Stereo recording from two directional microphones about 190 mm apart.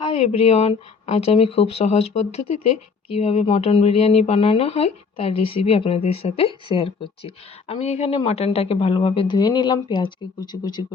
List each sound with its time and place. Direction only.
0.0 s speech: 35° left (ahead or behind)